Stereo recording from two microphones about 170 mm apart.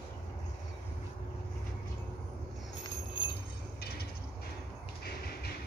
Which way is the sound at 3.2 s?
30° left (ahead or behind).